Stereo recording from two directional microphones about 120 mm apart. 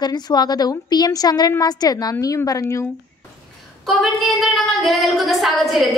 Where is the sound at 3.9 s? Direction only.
Centre (ahead or behind).